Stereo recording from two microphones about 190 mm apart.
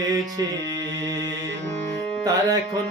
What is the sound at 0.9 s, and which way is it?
Music, 70° right (ahead or behind).